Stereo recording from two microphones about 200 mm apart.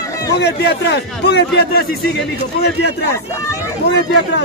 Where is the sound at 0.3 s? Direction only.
55° left (ahead or behind).